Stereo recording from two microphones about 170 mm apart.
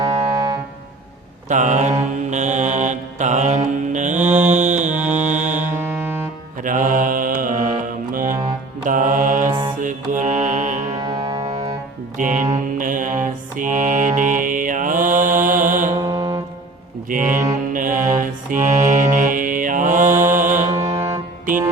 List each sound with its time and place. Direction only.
1.5 s mantra: 45° right (ahead or behind)
5.1 s music: 45° right (ahead or behind)
5.7 s music: 15° right (ahead or behind)
6.7 s mantra: 50° right (ahead or behind)
8.1 s music: 50° right (ahead or behind)
8.9 s mantra: 50° right (ahead or behind)
9.5 s mantra: 25° right (ahead or behind)
9.8 s mantra: 50° right (ahead or behind)
11.0 s music: 30° right (ahead or behind)
12.1 s mantra: 50° right (ahead or behind)
16.0 s music: 20° right (ahead or behind)
17.1 s music: 50° right (ahead or behind)
17.5 s mantra: 50° right (ahead or behind)
20.8 s music: 20° right (ahead or behind)